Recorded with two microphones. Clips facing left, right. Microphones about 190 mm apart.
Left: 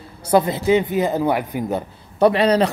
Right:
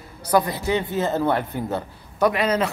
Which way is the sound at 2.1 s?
30° left (ahead or behind).